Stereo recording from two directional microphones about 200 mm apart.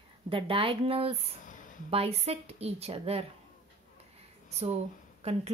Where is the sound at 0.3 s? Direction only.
25° right (ahead or behind).